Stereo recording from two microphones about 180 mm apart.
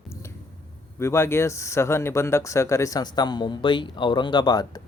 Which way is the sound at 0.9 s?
15° left (ahead or behind).